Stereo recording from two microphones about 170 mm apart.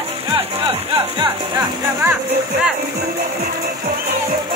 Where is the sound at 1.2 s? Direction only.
20° right (ahead or behind).